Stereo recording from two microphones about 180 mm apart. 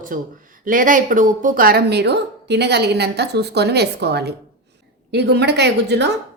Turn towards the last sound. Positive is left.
turn(degrees=-70)  # may be behind; listen again after turning